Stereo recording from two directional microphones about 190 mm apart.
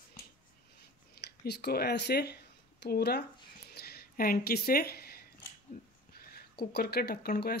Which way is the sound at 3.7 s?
55° left (ahead or behind).